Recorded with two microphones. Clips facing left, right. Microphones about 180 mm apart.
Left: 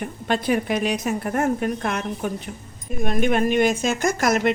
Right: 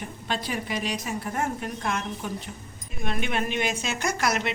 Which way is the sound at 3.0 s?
45° left (ahead or behind).